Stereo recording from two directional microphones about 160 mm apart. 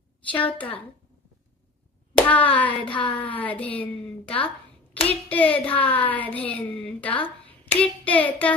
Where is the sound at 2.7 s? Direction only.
30° left (ahead or behind).